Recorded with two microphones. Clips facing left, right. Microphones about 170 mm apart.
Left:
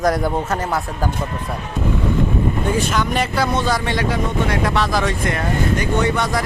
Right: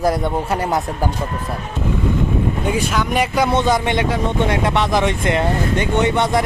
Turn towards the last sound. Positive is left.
turn(degrees=-25)  # may be behind; listen again after turning